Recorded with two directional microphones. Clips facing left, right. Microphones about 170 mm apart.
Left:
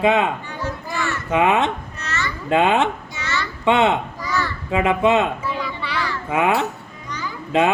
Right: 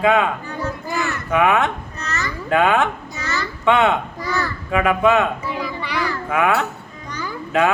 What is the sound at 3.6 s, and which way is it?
Speech, 25° left (ahead or behind).